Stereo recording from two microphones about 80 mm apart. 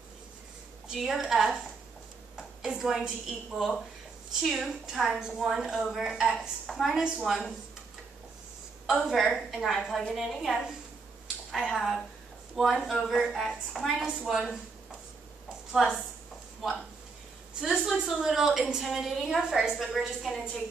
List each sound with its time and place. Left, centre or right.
0.8 s a woman's voice: centre
8.8 s a woman's voice: centre
15.7 s a woman's voice: centre
17.6 s a woman's voice: centre